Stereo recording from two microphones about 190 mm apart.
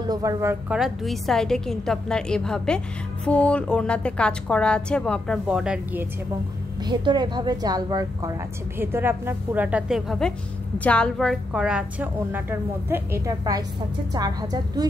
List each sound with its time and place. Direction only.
0.0 s speech: 20° right (ahead or behind)
0.7 s a woman's voice: centre (ahead or behind)
6.8 s a woman's voice: 20° right (ahead or behind)